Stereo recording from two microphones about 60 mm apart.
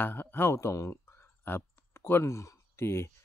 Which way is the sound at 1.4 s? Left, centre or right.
Left.